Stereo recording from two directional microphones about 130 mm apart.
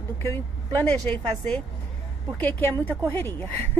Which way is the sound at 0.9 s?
10° left (ahead or behind).